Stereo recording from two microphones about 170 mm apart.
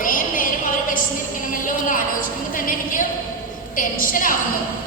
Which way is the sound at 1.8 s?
50° left (ahead or behind).